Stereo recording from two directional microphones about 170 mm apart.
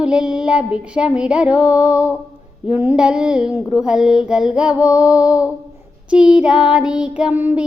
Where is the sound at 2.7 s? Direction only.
10° right (ahead or behind).